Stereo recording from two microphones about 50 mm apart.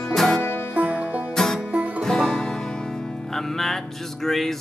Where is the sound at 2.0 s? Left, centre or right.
Centre.